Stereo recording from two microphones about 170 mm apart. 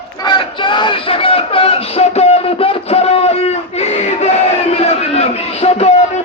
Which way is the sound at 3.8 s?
40° left (ahead or behind).